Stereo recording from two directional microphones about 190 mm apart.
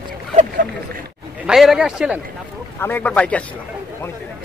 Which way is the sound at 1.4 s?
Centre (ahead or behind).